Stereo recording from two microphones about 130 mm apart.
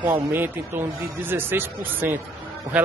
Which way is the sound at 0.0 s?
15° right (ahead or behind).